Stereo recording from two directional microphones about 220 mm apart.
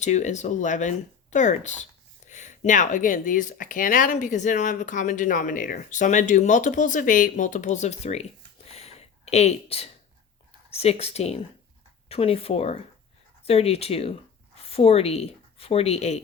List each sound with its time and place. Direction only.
0.0 s speech: 30° left (ahead or behind)